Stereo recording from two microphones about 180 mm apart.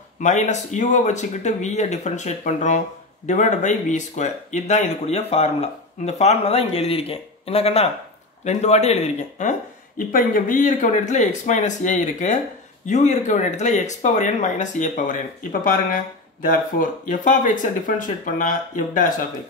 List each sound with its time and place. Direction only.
0.2 s speech: 40° left (ahead or behind)